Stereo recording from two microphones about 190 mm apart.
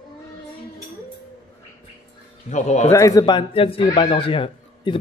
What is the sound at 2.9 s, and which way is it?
A man's voice, 15° left (ahead or behind).